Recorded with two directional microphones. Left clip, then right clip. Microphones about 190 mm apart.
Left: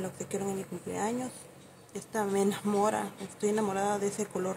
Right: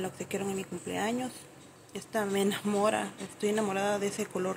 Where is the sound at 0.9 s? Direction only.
10° left (ahead or behind).